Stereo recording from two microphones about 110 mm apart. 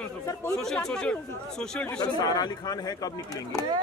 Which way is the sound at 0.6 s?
5° left (ahead or behind).